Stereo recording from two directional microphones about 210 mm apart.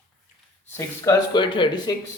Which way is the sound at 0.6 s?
10° left (ahead or behind).